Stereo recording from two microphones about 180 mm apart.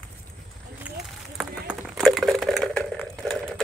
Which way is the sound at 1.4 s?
Centre (ahead or behind).